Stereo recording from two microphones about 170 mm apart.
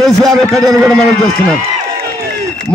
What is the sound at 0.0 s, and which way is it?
A man's voice, centre (ahead or behind).